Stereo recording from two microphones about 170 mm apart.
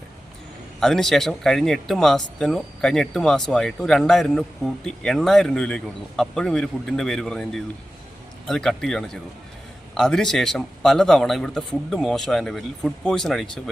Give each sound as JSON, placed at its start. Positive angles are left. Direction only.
{"t": 0.8, "sound": "speech", "side_deg": 0}